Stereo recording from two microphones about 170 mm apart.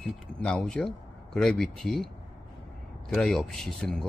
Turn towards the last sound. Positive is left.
turn(degrees=5)  # may be behind; listen again after turning